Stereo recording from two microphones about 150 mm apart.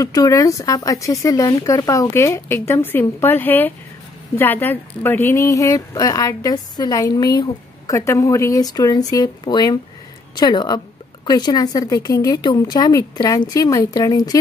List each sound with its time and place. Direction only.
0.0 s speech: 25° left (ahead or behind)